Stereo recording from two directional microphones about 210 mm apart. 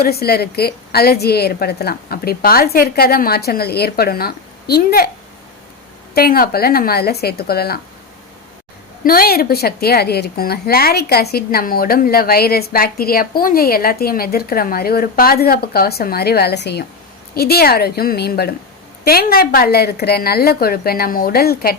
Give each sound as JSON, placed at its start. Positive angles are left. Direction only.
{"t": 0.0, "sound": "a woman's voice", "side_deg": 45}
{"t": 6.1, "sound": "a woman's voice", "side_deg": 45}
{"t": 9.0, "sound": "a woman's voice", "side_deg": 45}